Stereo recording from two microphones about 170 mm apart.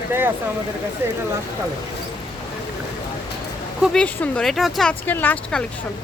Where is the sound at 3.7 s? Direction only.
Centre (ahead or behind).